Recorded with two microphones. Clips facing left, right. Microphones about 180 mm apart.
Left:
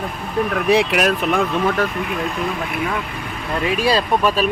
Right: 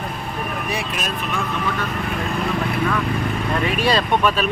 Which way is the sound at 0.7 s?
75° left (ahead or behind).